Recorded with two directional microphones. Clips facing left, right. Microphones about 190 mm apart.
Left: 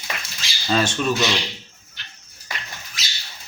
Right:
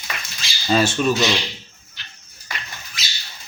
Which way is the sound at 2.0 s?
50° left (ahead or behind).